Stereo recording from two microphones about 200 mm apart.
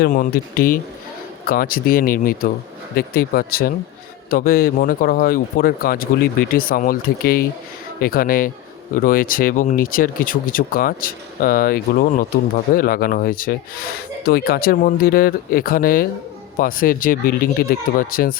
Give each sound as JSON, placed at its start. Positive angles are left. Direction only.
{"t": 0.0, "sound": "speech", "side_deg": 45}